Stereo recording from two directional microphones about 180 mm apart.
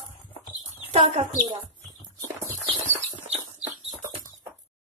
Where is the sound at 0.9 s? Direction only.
40° right (ahead or behind).